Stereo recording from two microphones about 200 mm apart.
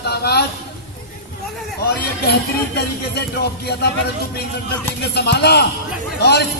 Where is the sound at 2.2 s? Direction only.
55° left (ahead or behind).